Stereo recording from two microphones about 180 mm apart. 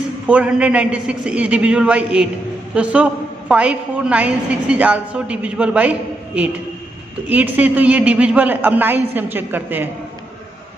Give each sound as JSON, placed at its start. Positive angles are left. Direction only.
{"t": 0.3, "sound": "a woman's voice", "side_deg": -5}